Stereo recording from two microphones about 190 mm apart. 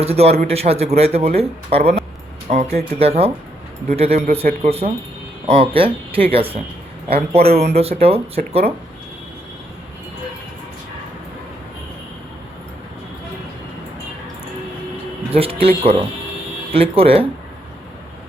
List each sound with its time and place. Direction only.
0.0 s speech: 35° right (ahead or behind)
15.3 s speech: 30° right (ahead or behind)